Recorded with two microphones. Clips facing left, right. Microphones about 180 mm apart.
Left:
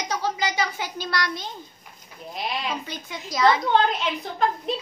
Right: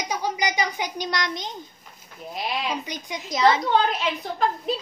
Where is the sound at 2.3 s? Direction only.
Centre (ahead or behind).